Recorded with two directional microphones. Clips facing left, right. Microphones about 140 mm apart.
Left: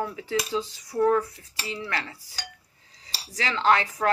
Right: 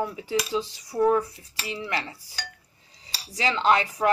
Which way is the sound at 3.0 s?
20° right (ahead or behind).